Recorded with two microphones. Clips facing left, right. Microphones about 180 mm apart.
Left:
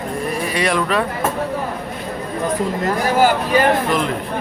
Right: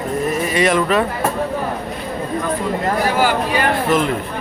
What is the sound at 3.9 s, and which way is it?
Speech, 5° right (ahead or behind).